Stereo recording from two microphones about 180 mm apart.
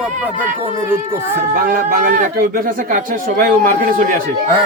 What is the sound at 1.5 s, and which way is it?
Speech, 55° right (ahead or behind).